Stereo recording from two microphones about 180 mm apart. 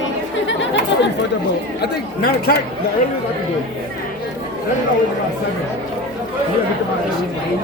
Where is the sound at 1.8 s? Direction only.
60° left (ahead or behind).